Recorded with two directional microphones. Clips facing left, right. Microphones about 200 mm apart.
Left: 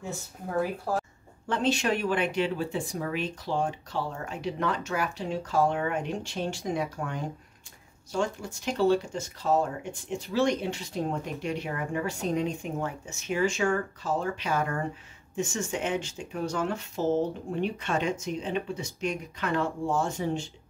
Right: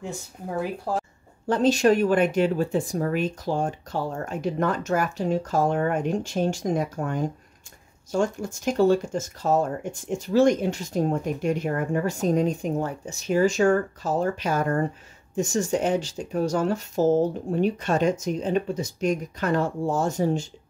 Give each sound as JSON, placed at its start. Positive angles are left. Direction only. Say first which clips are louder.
{"t": 0.9, "sound": "speech", "louder": "right 2 dB", "side_deg": -15}
{"t": 1.5, "sound": "speech", "louder": "right 7 dB", "side_deg": -40}